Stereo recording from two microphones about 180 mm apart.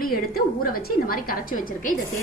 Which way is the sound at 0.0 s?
55° left (ahead or behind).